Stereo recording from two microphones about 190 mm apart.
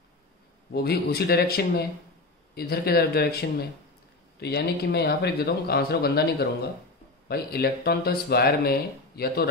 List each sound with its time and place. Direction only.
0.7 s speech: 55° left (ahead or behind)